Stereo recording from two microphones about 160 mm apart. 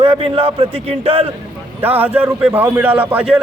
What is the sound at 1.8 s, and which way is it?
A man's voice, 10° right (ahead or behind).